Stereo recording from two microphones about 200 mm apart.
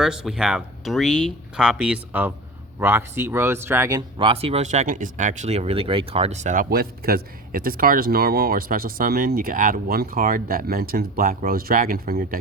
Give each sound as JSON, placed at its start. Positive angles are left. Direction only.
{"t": 0.0, "sound": "speech", "side_deg": -5}